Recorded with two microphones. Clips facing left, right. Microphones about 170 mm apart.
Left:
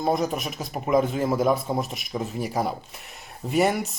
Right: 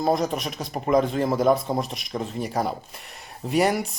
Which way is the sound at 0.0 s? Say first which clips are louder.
Right 1 dB; centre (ahead or behind).